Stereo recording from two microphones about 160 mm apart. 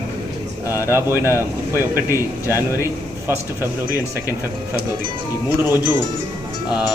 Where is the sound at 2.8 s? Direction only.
15° right (ahead or behind).